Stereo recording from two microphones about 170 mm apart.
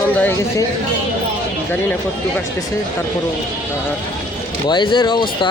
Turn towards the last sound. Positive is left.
turn(degrees=30)  # may be behind; listen again after turning